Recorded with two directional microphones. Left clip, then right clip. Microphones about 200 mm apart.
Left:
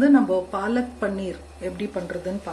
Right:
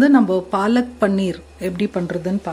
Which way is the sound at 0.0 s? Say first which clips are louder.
Right 4 dB; 55° right (ahead or behind).